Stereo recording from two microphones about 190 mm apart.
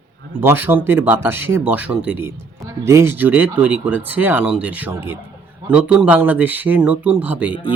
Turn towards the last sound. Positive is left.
turn(degrees=25)  # may be behind; listen again after turning